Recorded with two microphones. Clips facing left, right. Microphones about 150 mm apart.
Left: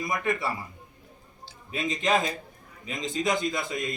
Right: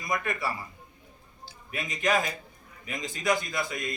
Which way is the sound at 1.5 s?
25° left (ahead or behind).